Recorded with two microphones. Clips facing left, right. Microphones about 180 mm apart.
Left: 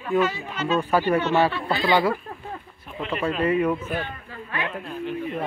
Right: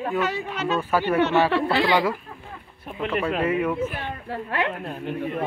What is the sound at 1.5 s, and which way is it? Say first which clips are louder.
Speech: right 5 dB; 75° right (ahead or behind).